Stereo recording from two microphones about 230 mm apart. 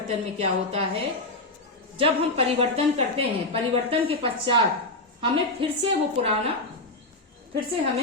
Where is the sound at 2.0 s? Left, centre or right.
Right.